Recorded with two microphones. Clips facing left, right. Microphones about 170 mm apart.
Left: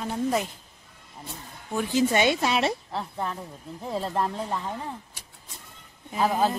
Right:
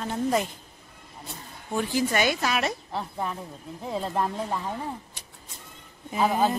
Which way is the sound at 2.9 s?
Centre (ahead or behind).